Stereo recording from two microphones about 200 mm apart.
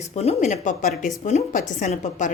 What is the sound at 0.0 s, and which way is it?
A woman's voice, 35° left (ahead or behind).